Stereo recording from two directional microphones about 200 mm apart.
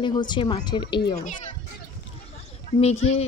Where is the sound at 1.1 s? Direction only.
35° left (ahead or behind).